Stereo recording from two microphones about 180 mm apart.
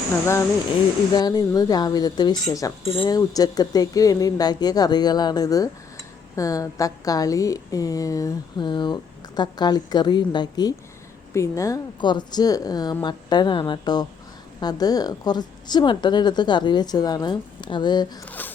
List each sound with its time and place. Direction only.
1.1 s a woman's voice: 20° left (ahead or behind)
2.8 s a woman's voice: 30° left (ahead or behind)
18.3 s speech: 10° left (ahead or behind)